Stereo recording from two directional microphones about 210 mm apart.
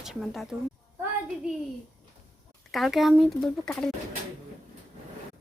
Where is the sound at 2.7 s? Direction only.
Centre (ahead or behind).